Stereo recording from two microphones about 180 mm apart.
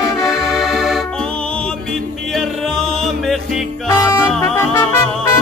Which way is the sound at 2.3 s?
Centre (ahead or behind).